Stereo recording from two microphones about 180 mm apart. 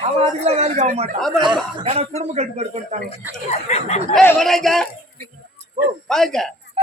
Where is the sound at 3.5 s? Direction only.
40° left (ahead or behind).